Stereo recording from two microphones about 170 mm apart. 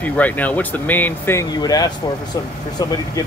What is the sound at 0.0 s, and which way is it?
Speech, 10° left (ahead or behind).